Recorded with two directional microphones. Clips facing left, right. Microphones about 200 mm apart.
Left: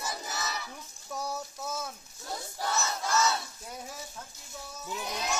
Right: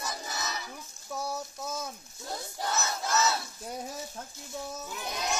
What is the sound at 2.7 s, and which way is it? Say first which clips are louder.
Battle cry: even; 5° right (ahead or behind).